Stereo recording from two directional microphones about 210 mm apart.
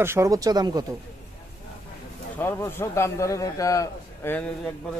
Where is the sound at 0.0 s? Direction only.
15° right (ahead or behind).